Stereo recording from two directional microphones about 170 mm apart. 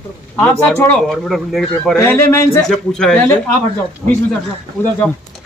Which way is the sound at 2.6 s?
5° left (ahead or behind).